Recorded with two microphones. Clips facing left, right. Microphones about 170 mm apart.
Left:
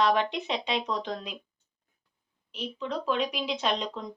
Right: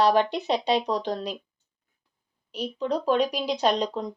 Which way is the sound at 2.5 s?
40° right (ahead or behind).